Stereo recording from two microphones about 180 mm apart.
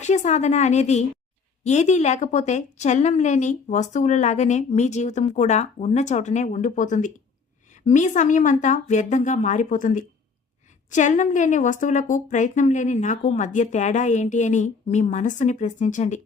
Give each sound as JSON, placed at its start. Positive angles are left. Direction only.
{"t": 0.0, "sound": "a woman's voice", "side_deg": 40}